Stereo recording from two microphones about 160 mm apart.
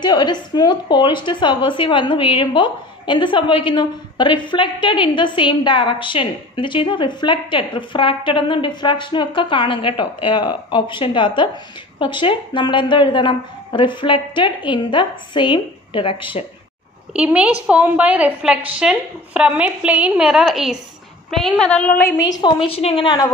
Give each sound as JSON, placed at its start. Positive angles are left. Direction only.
{"t": 0.0, "sound": "a woman's voice", "side_deg": 25}
{"t": 17.1, "sound": "a woman's voice", "side_deg": -5}
{"t": 22.4, "sound": "a woman's voice", "side_deg": 35}